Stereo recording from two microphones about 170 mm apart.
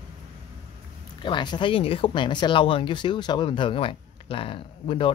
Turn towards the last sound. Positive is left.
turn(degrees=30)  # may be behind; listen again after turning